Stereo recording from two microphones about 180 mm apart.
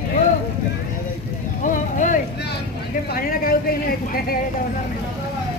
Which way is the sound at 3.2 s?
50° left (ahead or behind).